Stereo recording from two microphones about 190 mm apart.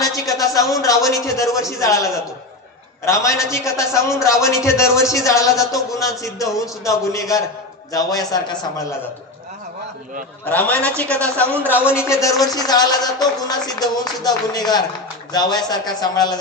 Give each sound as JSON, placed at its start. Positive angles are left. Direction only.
{"t": 0.0, "sound": "a man's voice", "side_deg": 20}
{"t": 3.1, "sound": "speech", "side_deg": 15}
{"t": 10.5, "sound": "speech", "side_deg": 10}